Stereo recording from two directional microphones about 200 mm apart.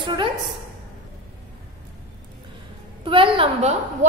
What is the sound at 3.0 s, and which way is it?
Speech, 25° right (ahead or behind).